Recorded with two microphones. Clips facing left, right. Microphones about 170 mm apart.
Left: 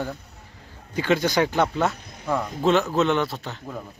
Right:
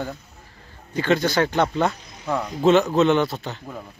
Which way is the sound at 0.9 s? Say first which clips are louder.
Right 1 dB; 10° left (ahead or behind).